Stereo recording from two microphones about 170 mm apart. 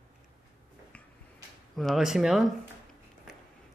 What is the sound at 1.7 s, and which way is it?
Speech, centre (ahead or behind).